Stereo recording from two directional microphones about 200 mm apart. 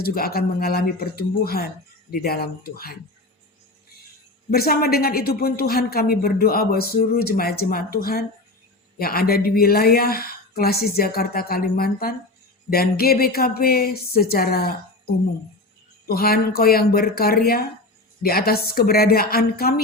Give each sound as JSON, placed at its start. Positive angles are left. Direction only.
{"t": 0.0, "sound": "speech", "side_deg": 50}
{"t": 4.5, "sound": "speech", "side_deg": 50}